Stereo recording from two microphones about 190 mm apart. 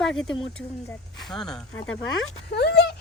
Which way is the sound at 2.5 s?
60° left (ahead or behind).